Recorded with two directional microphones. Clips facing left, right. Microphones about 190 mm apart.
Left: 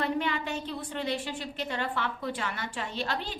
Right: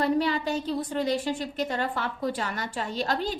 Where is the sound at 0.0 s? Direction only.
35° right (ahead or behind).